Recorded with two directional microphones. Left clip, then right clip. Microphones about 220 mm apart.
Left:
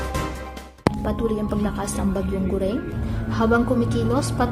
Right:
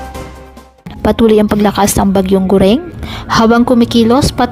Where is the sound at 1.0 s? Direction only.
45° right (ahead or behind).